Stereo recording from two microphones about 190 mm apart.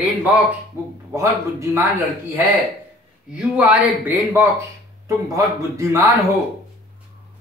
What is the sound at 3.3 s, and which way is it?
Speech, 5° right (ahead or behind).